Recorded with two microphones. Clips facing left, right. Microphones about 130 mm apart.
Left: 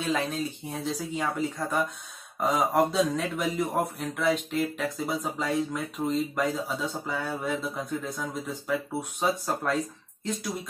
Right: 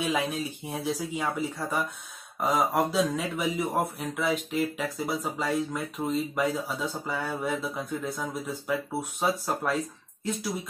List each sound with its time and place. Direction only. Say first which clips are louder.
0.0 s speech: even; 10° right (ahead or behind)
2.4 s speech: left 1 dB; 5° right (ahead or behind)